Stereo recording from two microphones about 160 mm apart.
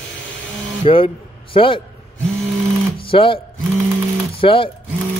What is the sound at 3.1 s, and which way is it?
Speech, 35° left (ahead or behind).